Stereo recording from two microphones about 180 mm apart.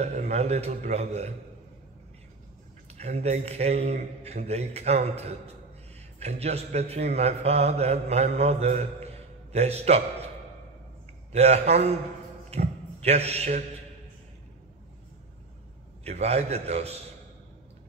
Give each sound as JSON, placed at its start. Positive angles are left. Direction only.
{"t": 0.0, "sound": "a man's voice", "side_deg": -40}
{"t": 2.9, "sound": "a man's voice", "side_deg": -35}
{"t": 11.3, "sound": "a man's voice", "side_deg": -35}
{"t": 12.4, "sound": "a sound", "side_deg": -35}
{"t": 16.0, "sound": "a man's voice", "side_deg": -35}